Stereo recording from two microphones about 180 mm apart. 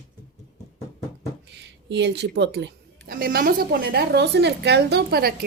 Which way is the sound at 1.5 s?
70° right (ahead or behind).